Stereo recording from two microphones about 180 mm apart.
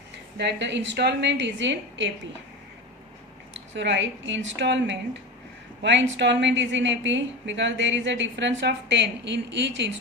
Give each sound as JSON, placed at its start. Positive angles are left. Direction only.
{"t": 0.3, "sound": "a woman's voice", "side_deg": -75}
{"t": 3.5, "sound": "a woman's voice", "side_deg": -85}